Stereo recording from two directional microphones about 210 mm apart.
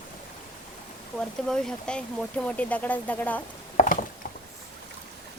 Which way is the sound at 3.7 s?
40° left (ahead or behind).